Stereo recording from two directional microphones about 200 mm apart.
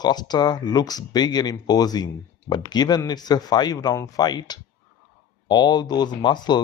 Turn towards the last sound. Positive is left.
turn(degrees=20)  # may be behind; listen again after turning